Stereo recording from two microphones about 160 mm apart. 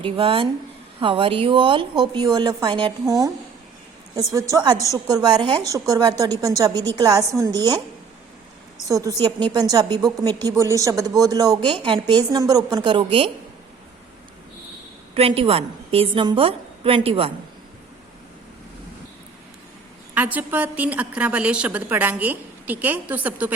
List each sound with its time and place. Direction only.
0.0 s a woman's voice: 35° right (ahead or behind)
8.9 s a woman's voice: 20° right (ahead or behind)
15.1 s a woman's voice: 35° right (ahead or behind)
20.1 s a woman's voice: 10° right (ahead or behind)